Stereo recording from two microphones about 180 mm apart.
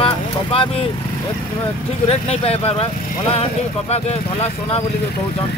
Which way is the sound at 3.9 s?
35° left (ahead or behind).